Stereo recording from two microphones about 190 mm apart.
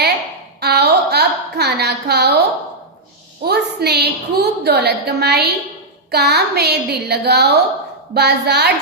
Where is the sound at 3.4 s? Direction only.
55° right (ahead or behind).